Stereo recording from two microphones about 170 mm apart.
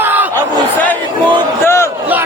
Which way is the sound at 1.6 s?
15° left (ahead or behind).